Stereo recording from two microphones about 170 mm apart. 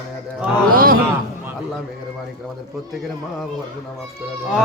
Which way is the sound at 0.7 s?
60° right (ahead or behind).